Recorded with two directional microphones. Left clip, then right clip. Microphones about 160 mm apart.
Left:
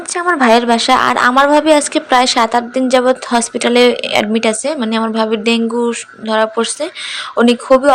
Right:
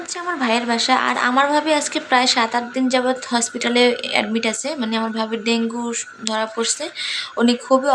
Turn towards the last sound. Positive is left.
turn(degrees=30)  # may be behind; listen again after turning